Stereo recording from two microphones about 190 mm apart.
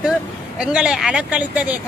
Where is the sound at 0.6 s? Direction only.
5° right (ahead or behind).